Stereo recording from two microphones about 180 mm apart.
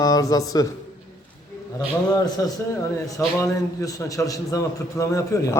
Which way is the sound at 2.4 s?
20° left (ahead or behind).